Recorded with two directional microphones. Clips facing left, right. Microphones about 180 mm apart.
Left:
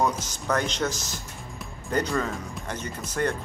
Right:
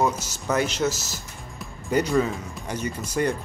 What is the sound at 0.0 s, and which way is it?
Speech, 5° right (ahead or behind).